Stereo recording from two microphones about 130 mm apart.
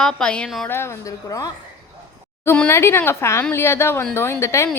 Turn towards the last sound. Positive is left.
turn(degrees=20)  # may be behind; listen again after turning